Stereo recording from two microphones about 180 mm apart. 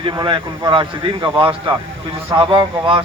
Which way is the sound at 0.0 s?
25° right (ahead or behind).